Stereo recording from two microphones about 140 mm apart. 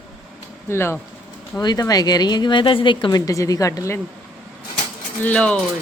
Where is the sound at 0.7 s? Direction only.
20° left (ahead or behind).